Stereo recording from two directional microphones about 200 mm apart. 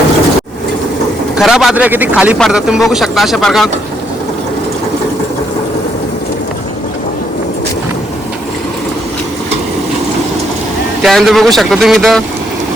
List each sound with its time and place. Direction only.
1.4 s speech: centre (ahead or behind)
11.0 s speech: centre (ahead or behind)